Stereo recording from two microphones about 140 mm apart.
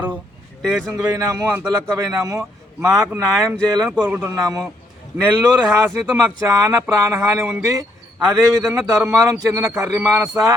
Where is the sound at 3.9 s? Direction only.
15° right (ahead or behind).